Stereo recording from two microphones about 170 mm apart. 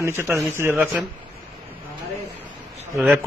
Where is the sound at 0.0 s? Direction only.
15° right (ahead or behind).